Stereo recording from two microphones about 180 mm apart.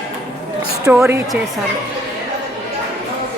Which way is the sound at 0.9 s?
10° right (ahead or behind).